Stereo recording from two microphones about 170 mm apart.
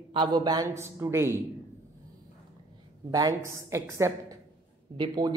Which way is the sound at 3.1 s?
20° right (ahead or behind).